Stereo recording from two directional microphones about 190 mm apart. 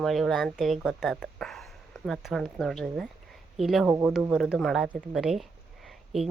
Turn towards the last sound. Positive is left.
turn(degrees=0)  # may be behind; listen again after turning